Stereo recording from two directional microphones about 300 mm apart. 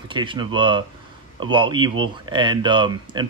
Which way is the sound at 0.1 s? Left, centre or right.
Centre.